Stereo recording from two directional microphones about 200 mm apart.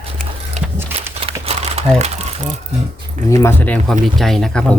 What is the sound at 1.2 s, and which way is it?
Crumpling, 30° right (ahead or behind).